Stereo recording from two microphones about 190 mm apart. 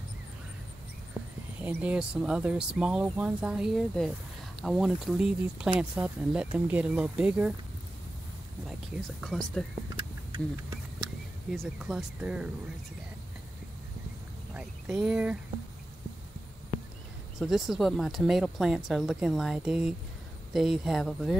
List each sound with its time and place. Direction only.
1.6 s speech: 10° right (ahead or behind)
9.2 s speech: 5° left (ahead or behind)
9.9 s a sound: 20° right (ahead or behind)
11.5 s speech: centre (ahead or behind)
14.5 s a sound: 5° right (ahead or behind)
17.4 s speech: centre (ahead or behind)